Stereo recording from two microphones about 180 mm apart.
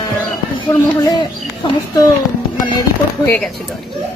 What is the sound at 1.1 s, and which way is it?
Speech, 25° left (ahead or behind).